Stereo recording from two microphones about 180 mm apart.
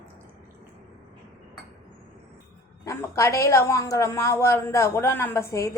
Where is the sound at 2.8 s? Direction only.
15° left (ahead or behind).